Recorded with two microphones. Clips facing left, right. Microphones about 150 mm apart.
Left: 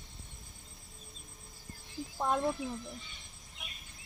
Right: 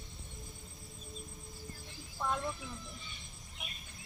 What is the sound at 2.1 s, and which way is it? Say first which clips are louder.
Speech: left 5 dB; 30° left (ahead or behind).